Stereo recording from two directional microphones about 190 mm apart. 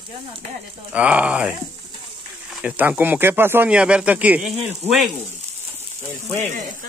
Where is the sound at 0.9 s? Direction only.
5° right (ahead or behind).